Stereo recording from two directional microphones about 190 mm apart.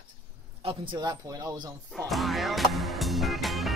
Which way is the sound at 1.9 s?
Centre (ahead or behind).